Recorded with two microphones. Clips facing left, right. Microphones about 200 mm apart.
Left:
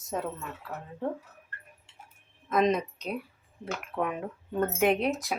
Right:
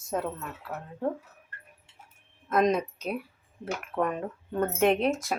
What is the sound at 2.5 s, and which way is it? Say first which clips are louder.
Speech: right 1 dB; centre (ahead or behind).